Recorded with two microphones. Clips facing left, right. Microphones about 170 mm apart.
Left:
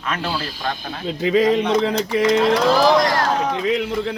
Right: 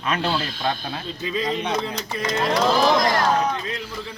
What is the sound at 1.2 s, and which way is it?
Speech, 90° left.